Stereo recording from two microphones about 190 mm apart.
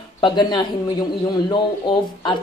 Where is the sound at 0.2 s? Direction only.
25° left (ahead or behind).